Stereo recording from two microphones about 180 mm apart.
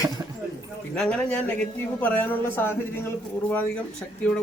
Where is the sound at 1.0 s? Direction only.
5° left (ahead or behind).